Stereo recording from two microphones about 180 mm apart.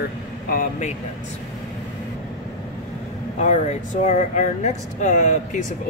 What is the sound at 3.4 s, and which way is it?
Speech, 40° left (ahead or behind).